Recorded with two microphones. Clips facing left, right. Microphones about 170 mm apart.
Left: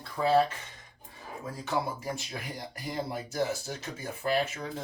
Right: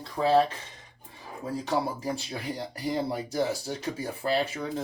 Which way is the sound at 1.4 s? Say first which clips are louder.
Right 4 dB; 35° right (ahead or behind).